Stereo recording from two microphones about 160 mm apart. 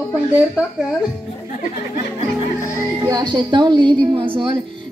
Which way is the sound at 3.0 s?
25° right (ahead or behind).